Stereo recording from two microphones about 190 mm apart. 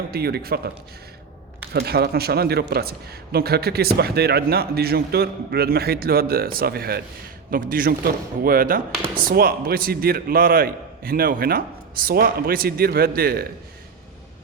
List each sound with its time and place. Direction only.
0.1 s speech: 55° right (ahead or behind)
1.7 s a man's voice: 60° right (ahead or behind)